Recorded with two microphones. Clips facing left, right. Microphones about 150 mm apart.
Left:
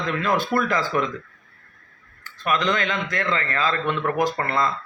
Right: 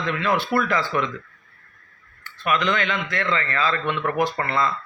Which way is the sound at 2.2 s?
40° left (ahead or behind).